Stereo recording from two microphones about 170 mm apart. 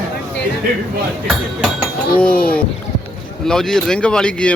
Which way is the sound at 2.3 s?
55° left (ahead or behind).